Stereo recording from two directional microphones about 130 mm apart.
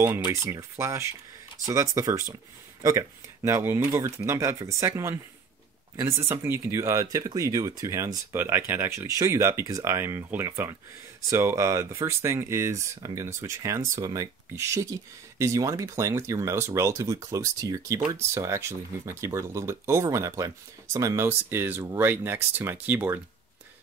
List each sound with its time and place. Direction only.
0.0 s speech: 20° right (ahead or behind)